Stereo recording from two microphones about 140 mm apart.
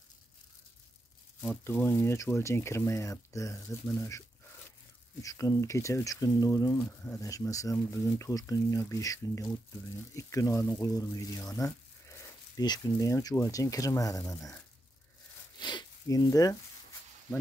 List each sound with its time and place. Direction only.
1.4 s speech: 15° left (ahead or behind)
5.2 s speech: 25° left (ahead or behind)
15.6 s speech: 30° left (ahead or behind)